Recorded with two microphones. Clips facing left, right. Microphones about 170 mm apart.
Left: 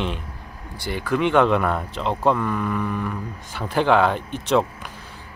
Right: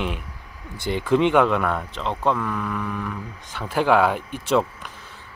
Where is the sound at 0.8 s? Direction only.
25° right (ahead or behind).